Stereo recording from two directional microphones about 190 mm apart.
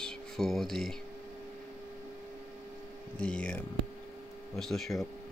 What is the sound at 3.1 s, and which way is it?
Speech, 5° left (ahead or behind).